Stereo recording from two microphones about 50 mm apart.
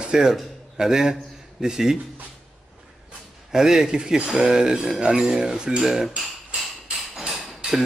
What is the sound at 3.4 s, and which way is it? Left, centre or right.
A man's voice, centre.